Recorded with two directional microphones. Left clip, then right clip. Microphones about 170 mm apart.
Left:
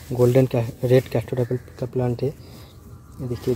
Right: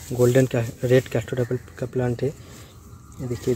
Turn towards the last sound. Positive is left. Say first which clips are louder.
# even
turn(degrees=0)  # may be behind; listen again after turning